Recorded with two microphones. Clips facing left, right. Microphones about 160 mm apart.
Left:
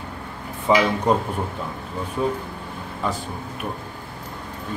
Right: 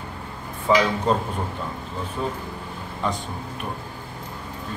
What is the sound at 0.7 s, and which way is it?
Speech, 15° left (ahead or behind).